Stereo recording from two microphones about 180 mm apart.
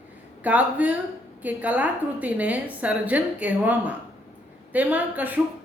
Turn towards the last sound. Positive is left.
turn(degrees=-10)  # may be behind; listen again after turning